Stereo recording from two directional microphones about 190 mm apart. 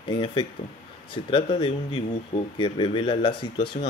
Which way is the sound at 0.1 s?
25° left (ahead or behind).